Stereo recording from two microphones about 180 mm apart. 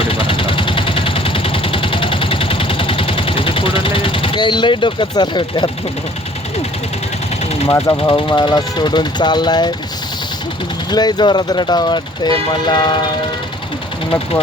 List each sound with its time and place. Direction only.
0.1 s vehicle: 30° left (ahead or behind)
8.0 s speech: 25° left (ahead or behind)
10.9 s speech: 25° left (ahead or behind)